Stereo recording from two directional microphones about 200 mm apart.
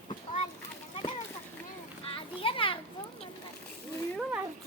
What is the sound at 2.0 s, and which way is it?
Children playing, 25° left (ahead or behind).